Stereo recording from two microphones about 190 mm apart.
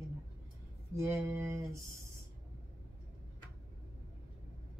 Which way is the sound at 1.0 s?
15° right (ahead or behind).